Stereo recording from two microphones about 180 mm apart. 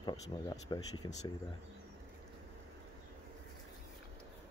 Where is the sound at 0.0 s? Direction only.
20° left (ahead or behind).